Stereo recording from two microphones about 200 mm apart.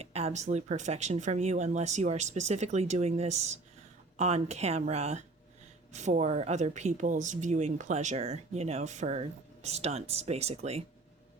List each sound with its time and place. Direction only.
0.0 s speech: 30° right (ahead or behind)